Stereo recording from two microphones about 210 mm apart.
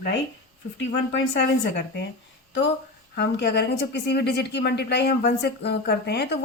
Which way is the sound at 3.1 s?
50° left (ahead or behind).